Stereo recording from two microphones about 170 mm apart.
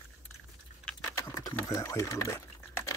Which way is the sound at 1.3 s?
20° left (ahead or behind).